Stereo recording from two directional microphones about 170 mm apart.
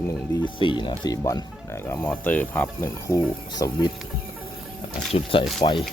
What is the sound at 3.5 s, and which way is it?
Speech, 25° left (ahead or behind).